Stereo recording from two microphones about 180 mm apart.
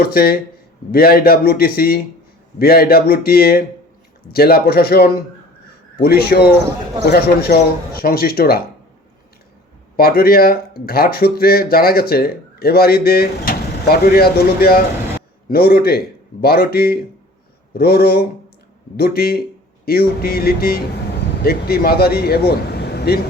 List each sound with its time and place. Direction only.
0.0 s speech: 60° left (ahead or behind)
7.9 s speech: 55° left (ahead or behind)
10.0 s speech: 60° left (ahead or behind)